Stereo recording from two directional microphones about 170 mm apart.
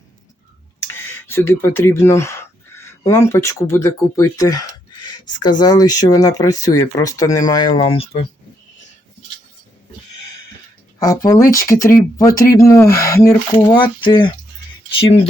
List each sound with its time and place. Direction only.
0.8 s a sound: 15° left (ahead or behind)
3.1 s speech: 15° left (ahead or behind); by 8.2 s 35° left (ahead or behind)
11.0 s speech: 20° left (ahead or behind)
13.7 s speech: 30° left (ahead or behind)